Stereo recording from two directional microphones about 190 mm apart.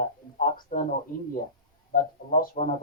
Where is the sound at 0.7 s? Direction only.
50° left (ahead or behind).